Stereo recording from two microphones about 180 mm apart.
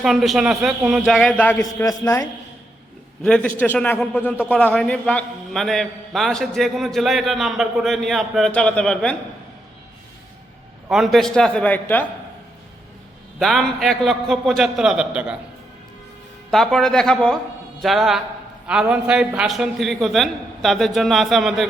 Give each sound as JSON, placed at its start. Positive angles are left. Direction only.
{"t": 0.0, "sound": "a man's voice", "side_deg": 0}
{"t": 3.2, "sound": "a man's voice", "side_deg": 5}
{"t": 10.8, "sound": "a man's voice", "side_deg": 0}
{"t": 13.4, "sound": "a man's voice", "side_deg": 0}
{"t": 16.5, "sound": "a man's voice", "side_deg": 0}